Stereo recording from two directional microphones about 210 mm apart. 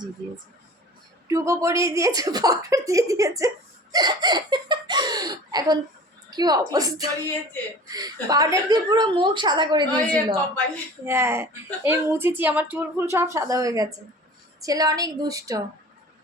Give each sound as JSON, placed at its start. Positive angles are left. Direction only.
{"t": 1.3, "sound": "a woman's voice", "side_deg": -15}
{"t": 9.9, "sound": "a woman's voice", "side_deg": 5}
{"t": 11.0, "sound": "a woman's voice", "side_deg": -10}